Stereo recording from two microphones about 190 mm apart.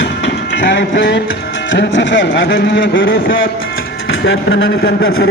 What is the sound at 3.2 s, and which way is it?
Speech, 85° left.